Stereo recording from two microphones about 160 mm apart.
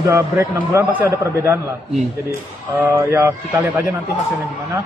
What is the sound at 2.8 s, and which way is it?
A man's voice, 15° right (ahead or behind).